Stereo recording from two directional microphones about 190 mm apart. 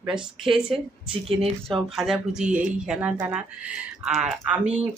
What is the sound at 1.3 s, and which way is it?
Speech, 30° right (ahead or behind).